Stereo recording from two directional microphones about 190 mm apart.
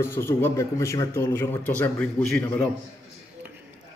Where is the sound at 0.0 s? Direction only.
15° left (ahead or behind).